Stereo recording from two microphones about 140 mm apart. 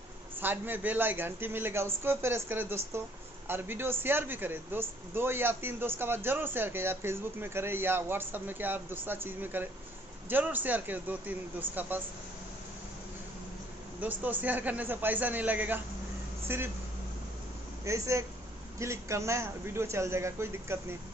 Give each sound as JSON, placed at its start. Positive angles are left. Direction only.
{"t": 0.4, "sound": "speech", "side_deg": -15}
{"t": 14.0, "sound": "speech", "side_deg": -10}
{"t": 17.8, "sound": "a man's voice", "side_deg": -20}